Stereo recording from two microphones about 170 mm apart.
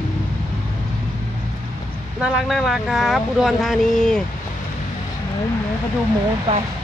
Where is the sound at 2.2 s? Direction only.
Centre (ahead or behind).